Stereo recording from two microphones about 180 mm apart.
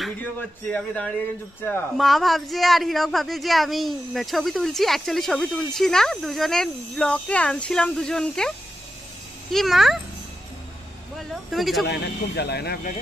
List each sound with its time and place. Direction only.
0.0 s speech: 5° left (ahead or behind)
2.0 s speech: centre (ahead or behind)
11.1 s speech: centre (ahead or behind)
11.8 s speech: 70° left (ahead or behind)